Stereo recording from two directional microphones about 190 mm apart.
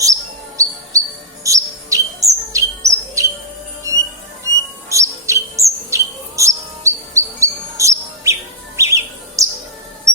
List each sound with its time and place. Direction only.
0.5 s music: 15° right (ahead or behind)
1.5 s chirp: 15° right (ahead or behind)
4.4 s bird: 15° right (ahead or behind)